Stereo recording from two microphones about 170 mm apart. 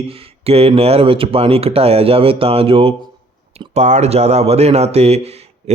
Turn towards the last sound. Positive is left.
turn(degrees=-40)  # may be behind; listen again after turning